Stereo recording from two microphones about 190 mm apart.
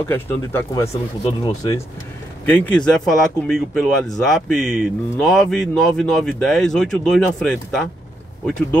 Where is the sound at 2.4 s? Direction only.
10° left (ahead or behind).